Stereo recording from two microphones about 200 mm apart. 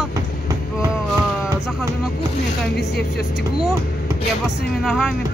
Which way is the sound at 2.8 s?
55° left (ahead or behind).